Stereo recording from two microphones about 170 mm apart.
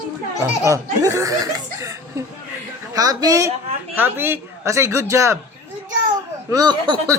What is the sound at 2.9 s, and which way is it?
A woman's voice, 20° right (ahead or behind).